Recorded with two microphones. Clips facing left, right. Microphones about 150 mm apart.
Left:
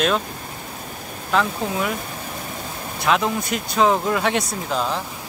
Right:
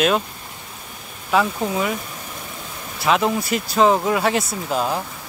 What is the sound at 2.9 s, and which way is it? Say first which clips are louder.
Speech: right 2 dB; centre (ahead or behind).